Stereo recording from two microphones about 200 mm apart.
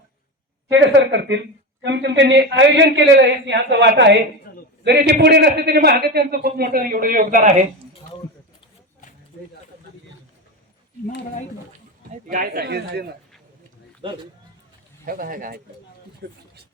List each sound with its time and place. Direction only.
0.7 s speech: 60° right (ahead or behind)
4.5 s a sound: 50° left (ahead or behind)
4.8 s a man's voice: 55° right (ahead or behind)
12.3 s a man's voice: 45° right (ahead or behind)
14.0 s a man's voice: 25° right (ahead or behind)
15.0 s a man's voice: 45° right (ahead or behind)